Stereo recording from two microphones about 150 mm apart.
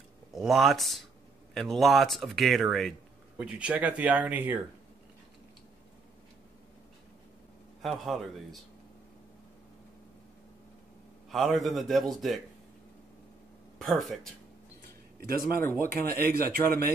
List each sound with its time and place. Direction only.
0.3 s speech: centre (ahead or behind)
7.8 s speech: centre (ahead or behind)
11.2 s speech: centre (ahead or behind)
13.7 s speech: centre (ahead or behind)
15.1 s speech: 80° right